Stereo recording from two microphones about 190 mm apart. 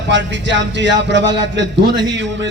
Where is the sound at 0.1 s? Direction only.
70° right (ahead or behind).